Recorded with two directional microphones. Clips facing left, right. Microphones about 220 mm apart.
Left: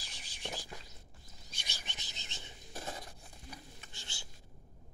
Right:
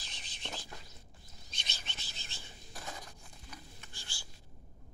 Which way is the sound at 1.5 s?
10° left (ahead or behind).